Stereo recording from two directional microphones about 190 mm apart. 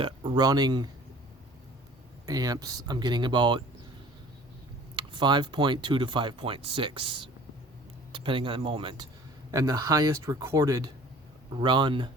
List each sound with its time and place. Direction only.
0.0 s speech: 25° right (ahead or behind)
2.2 s speech: 20° right (ahead or behind)
4.9 s speech: 25° right (ahead or behind)